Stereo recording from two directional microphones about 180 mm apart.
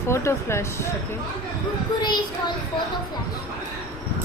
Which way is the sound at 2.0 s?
25° left (ahead or behind).